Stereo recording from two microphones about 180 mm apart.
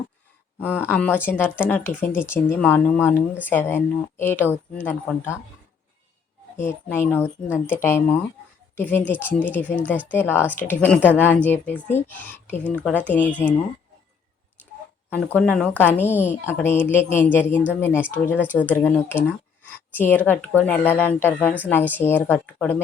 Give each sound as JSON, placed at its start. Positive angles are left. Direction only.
{"t": 0.8, "sound": "speech", "side_deg": 10}
{"t": 6.6, "sound": "speech", "side_deg": 15}
{"t": 15.1, "sound": "speech", "side_deg": 5}